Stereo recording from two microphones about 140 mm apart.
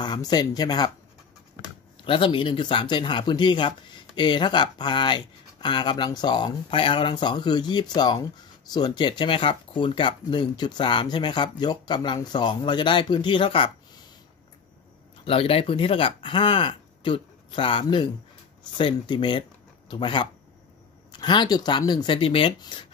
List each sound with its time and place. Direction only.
0.0 s speech: 30° left (ahead or behind)
2.0 s speech: 40° left (ahead or behind)
15.2 s speech: 40° left (ahead or behind)